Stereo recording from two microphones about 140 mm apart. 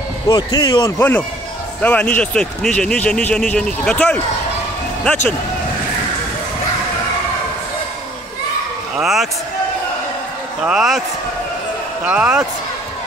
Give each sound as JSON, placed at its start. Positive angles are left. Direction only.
{"t": 0.3, "sound": "speech", "side_deg": 30}
{"t": 0.9, "sound": "a man's voice", "side_deg": 15}
{"t": 8.9, "sound": "speech", "side_deg": 0}
{"t": 10.6, "sound": "speech", "side_deg": -5}
{"t": 12.0, "sound": "speech", "side_deg": -10}